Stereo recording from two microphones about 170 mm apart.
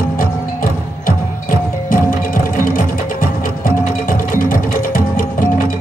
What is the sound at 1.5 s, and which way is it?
Music, 55° left (ahead or behind).